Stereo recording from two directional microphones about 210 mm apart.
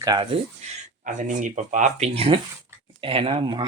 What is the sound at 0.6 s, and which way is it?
Speech, 35° right (ahead or behind).